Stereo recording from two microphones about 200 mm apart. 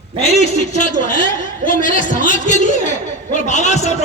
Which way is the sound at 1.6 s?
40° left (ahead or behind).